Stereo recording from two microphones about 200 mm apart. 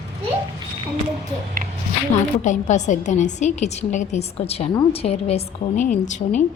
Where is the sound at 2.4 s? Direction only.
35° left (ahead or behind).